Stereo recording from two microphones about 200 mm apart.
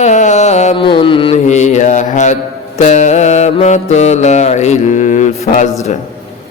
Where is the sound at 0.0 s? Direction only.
35° left (ahead or behind).